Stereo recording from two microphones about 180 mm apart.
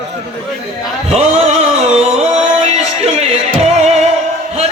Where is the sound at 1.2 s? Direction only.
35° right (ahead or behind).